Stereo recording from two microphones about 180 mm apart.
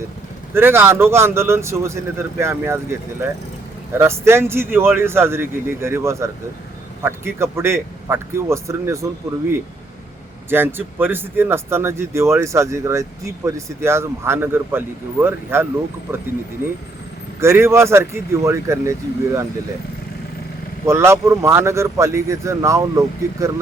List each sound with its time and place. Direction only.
0.5 s speech: 15° right (ahead or behind)
10.5 s speech: 10° right (ahead or behind)
17.4 s speech: 15° right (ahead or behind)
20.8 s speech: 15° right (ahead or behind)